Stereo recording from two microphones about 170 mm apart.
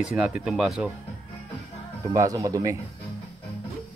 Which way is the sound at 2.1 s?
20° right (ahead or behind).